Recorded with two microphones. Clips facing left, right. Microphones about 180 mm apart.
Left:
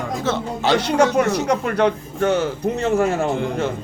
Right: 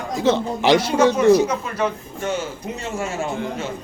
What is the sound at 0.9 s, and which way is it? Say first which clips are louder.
A man's voice: right 3 dB; 65° left (ahead or behind).